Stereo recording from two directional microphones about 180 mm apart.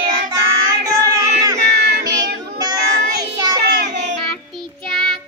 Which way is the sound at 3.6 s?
65° right (ahead or behind).